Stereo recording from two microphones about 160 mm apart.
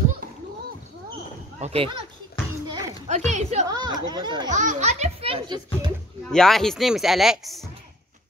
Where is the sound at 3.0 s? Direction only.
45° right (ahead or behind).